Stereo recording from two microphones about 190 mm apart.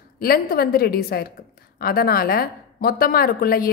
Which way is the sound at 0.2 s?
50° left (ahead or behind).